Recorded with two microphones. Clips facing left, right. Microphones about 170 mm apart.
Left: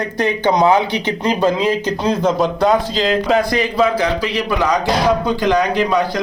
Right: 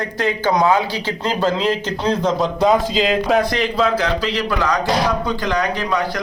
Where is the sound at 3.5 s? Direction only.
10° left (ahead or behind).